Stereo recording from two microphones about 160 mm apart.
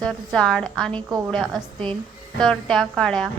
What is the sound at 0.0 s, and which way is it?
A woman's voice, 5° left (ahead or behind).